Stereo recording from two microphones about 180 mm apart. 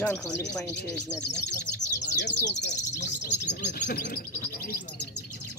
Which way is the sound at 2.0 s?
70° left (ahead or behind).